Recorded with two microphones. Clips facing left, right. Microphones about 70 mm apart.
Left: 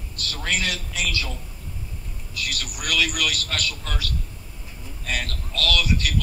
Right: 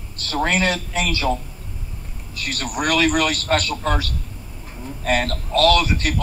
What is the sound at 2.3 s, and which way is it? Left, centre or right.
A man's voice, right.